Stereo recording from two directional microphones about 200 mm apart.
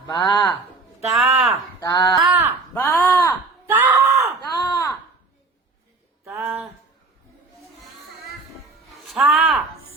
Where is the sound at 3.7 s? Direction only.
10° right (ahead or behind).